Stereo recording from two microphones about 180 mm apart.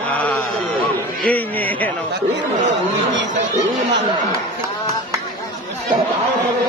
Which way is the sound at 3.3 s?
45° right (ahead or behind).